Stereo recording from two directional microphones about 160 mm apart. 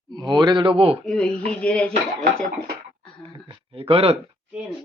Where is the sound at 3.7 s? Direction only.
35° right (ahead or behind).